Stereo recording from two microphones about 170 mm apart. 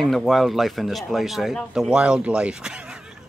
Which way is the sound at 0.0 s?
Centre (ahead or behind).